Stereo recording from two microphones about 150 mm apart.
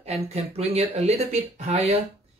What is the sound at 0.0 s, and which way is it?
Speech, 45° right (ahead or behind).